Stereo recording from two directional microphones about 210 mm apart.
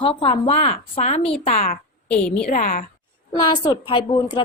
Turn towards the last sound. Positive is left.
turn(degrees=20)  # may be behind; listen again after turning